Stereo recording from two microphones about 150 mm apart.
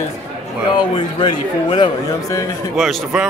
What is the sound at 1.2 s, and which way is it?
A man's voice, 30° left (ahead or behind).